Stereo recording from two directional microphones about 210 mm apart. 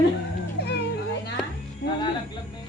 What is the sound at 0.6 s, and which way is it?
Cat, 50° left (ahead or behind).